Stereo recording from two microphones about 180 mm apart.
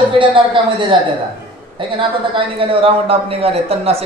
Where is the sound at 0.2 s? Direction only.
30° right (ahead or behind).